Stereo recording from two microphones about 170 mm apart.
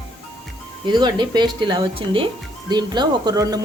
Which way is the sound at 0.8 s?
25° right (ahead or behind).